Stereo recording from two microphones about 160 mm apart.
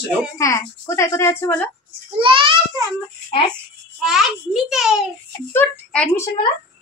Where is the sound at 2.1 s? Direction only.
30° right (ahead or behind).